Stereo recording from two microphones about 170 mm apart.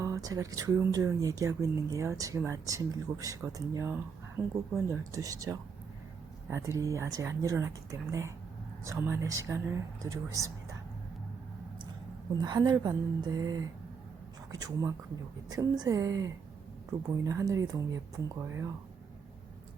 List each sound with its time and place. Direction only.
0.0 s speech: 20° right (ahead or behind)
12.4 s speech: 25° right (ahead or behind)